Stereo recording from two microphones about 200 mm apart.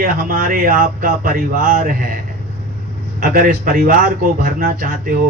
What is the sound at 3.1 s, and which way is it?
A man's voice, 45° right (ahead or behind).